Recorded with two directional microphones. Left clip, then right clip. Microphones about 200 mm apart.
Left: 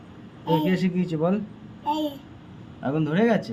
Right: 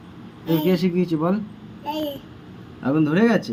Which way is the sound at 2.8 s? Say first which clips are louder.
Right 4 dB; 5° left (ahead or behind).